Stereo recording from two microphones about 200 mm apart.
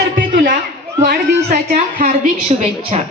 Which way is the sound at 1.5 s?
40° right (ahead or behind).